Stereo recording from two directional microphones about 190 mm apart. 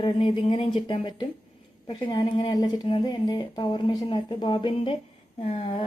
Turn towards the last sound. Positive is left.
turn(degrees=30)  # may be behind; listen again after turning